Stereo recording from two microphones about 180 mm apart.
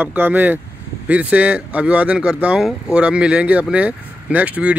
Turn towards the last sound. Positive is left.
turn(degrees=-5)  # may be behind; listen again after turning